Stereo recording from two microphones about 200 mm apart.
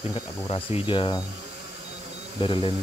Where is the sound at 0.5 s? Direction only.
25° left (ahead or behind).